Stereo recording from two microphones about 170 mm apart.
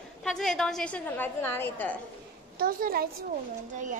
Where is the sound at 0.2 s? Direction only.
5° left (ahead or behind).